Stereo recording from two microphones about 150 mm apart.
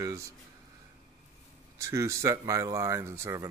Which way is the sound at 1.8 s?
20° right (ahead or behind).